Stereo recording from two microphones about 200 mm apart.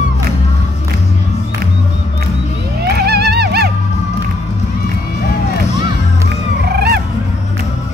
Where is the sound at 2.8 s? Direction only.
55° right (ahead or behind).